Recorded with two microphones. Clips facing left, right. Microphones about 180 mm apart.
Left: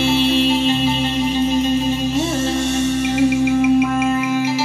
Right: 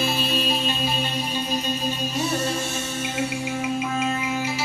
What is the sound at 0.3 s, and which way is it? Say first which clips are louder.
Music: left 10 dB; 25° left (ahead or behind).